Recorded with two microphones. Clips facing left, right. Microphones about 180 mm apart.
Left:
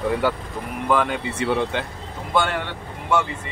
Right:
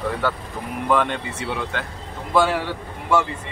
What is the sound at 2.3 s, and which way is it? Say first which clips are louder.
Speech: right 3 dB; 5° right (ahead or behind).